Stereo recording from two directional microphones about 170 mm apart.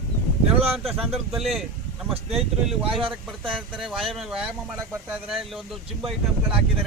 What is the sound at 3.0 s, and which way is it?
Speech, 30° right (ahead or behind).